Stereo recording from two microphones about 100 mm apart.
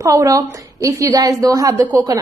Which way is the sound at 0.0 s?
35° right (ahead or behind).